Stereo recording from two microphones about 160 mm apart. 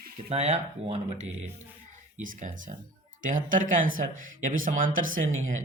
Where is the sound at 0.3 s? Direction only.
45° right (ahead or behind).